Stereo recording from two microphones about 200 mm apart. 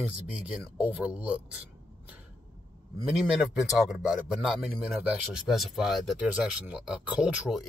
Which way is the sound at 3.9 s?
5° right (ahead or behind).